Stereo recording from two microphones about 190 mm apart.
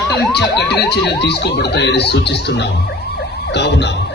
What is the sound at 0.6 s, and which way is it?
Speech, 60° left (ahead or behind).